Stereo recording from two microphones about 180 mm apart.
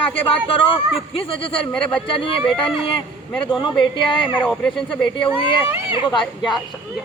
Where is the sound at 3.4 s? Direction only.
25° left (ahead or behind).